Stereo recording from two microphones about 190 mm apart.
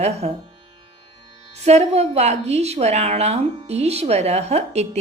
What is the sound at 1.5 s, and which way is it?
A woman's voice, 35° right (ahead or behind).